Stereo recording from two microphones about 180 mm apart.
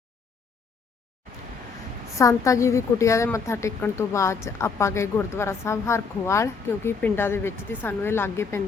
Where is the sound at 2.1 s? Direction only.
15° left (ahead or behind).